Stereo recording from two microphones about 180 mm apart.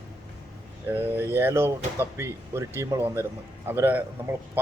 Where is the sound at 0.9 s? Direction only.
10° right (ahead or behind).